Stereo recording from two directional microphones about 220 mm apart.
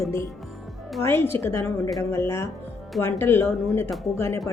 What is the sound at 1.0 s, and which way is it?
Speech, 10° left (ahead or behind).